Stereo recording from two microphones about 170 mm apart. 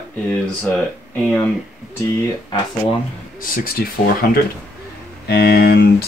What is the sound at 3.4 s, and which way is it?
Speech, 60° left (ahead or behind).